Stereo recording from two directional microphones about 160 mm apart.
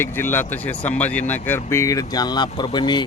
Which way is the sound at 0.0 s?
15° left (ahead or behind).